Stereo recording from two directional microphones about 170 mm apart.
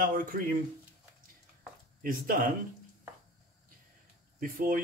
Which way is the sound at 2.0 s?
55° right (ahead or behind).